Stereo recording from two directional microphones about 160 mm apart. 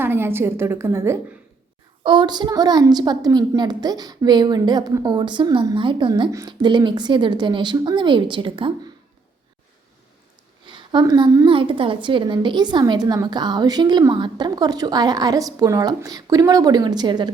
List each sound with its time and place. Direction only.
0.0 s a woman's voice: 15° right (ahead or behind)
2.0 s a woman's voice: 30° right (ahead or behind)
10.7 s a woman's voice: 30° right (ahead or behind)